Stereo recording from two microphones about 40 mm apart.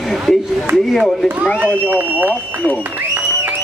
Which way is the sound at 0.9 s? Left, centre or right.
Centre.